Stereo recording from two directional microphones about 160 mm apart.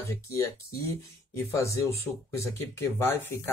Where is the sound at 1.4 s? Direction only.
20° left (ahead or behind).